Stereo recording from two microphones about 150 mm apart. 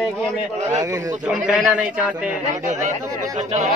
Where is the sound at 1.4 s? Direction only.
5° right (ahead or behind).